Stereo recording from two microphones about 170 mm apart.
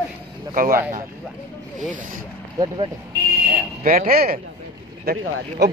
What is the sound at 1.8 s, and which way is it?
Speech, 50° right (ahead or behind).